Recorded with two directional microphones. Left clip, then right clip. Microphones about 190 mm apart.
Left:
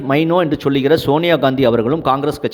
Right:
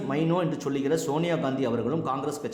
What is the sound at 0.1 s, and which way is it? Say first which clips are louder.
A man's voice: left 13 dB; 45° left (ahead or behind).